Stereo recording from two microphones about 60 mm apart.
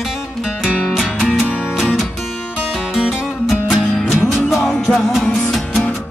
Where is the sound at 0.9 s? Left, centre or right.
Centre.